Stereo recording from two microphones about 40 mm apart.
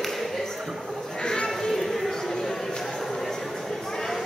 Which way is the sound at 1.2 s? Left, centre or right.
Centre.